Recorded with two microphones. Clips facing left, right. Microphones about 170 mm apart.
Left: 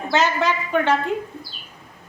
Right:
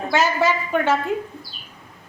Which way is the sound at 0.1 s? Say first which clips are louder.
Right 1 dB; 10° right (ahead or behind).